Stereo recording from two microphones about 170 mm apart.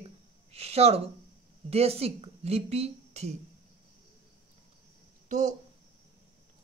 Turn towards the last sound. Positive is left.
turn(degrees=-45)  # may be behind; listen again after turning